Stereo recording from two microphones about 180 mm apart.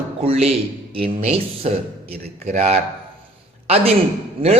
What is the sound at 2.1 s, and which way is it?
Speech, 55° right (ahead or behind).